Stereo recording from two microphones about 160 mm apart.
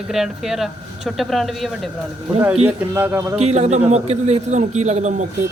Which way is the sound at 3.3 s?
45° right (ahead or behind).